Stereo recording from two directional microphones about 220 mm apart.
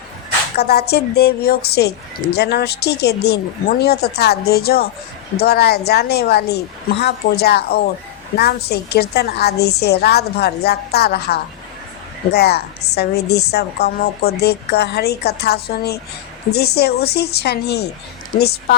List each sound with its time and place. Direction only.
0.5 s a woman's voice: 45° left (ahead or behind)